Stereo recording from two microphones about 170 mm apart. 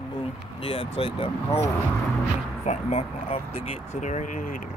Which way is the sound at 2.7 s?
45° left (ahead or behind).